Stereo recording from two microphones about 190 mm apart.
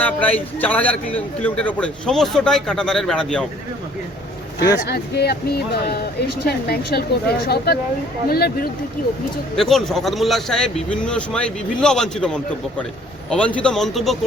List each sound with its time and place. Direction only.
0.0 s a man's voice: 5° left (ahead or behind)
4.8 s speech: 60° left (ahead or behind)
9.6 s a man's voice: centre (ahead or behind)